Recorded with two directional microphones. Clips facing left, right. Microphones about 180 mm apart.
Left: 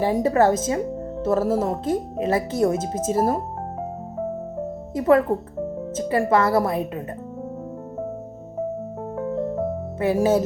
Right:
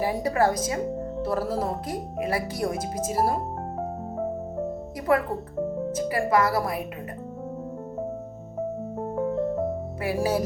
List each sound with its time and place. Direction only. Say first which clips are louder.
0.0 s speech: left 5 dB; 25° left (ahead or behind)
4.9 s speech: left 7 dB; 25° left (ahead or behind)
10.0 s speech: left 7 dB; 25° left (ahead or behind)